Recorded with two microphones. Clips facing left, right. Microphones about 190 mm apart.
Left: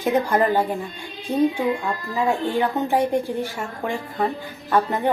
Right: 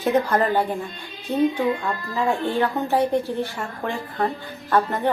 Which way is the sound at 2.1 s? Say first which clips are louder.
Even; 15° left (ahead or behind).